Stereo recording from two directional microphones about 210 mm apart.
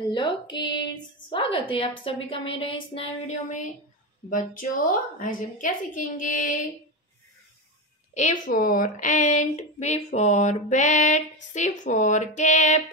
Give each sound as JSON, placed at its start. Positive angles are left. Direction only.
{"t": 0.1, "sound": "a woman's voice", "side_deg": 20}
{"t": 8.1, "sound": "a woman's voice", "side_deg": 35}